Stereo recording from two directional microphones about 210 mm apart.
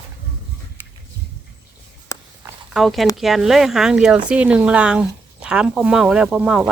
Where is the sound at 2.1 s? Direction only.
15° left (ahead or behind).